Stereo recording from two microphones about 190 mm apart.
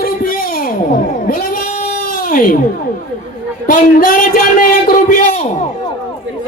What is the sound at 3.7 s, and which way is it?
Speech, 45° left (ahead or behind).